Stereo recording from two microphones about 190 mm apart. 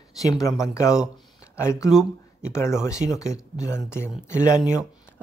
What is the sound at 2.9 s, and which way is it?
Speech, 5° right (ahead or behind).